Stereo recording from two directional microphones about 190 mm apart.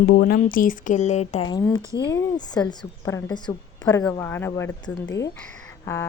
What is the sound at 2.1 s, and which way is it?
A woman's voice, 20° left (ahead or behind).